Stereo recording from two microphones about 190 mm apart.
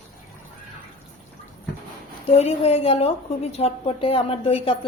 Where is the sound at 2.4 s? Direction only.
35° left (ahead or behind).